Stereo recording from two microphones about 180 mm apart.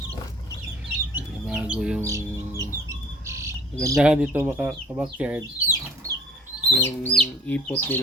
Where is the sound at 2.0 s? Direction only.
15° right (ahead or behind).